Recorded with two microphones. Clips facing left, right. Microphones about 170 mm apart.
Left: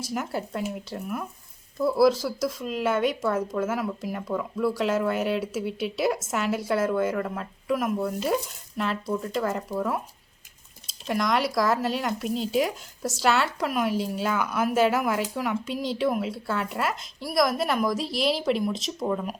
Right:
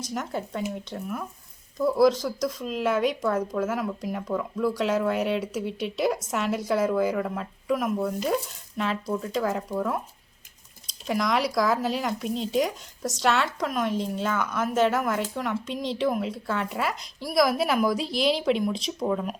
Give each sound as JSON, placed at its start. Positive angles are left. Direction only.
{"t": 0.1, "sound": "speech", "side_deg": 5}
{"t": 11.0, "sound": "speech", "side_deg": 0}